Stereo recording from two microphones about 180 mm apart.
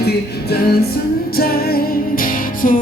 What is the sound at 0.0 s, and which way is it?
Music, 60° left (ahead or behind).